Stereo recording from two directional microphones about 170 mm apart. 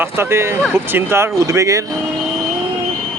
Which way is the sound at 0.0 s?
15° right (ahead or behind).